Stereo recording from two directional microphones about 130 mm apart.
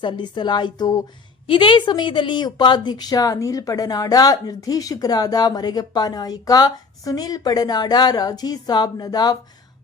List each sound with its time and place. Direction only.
0.0 s a woman's voice: 35° left (ahead or behind)